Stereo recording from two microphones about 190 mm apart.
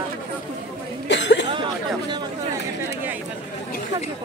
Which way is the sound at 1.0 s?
70° left (ahead or behind).